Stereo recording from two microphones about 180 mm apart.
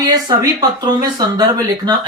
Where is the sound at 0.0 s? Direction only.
20° right (ahead or behind).